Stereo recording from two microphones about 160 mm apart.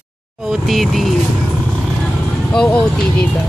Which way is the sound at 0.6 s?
Centre (ahead or behind).